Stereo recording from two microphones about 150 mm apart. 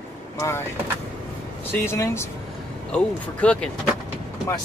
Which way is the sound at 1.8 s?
15° left (ahead or behind).